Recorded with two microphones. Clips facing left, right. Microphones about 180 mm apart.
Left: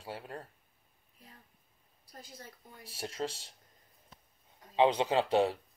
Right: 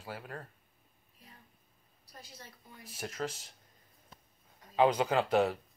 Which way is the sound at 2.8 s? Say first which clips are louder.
Left 1 dB; 30° left (ahead or behind).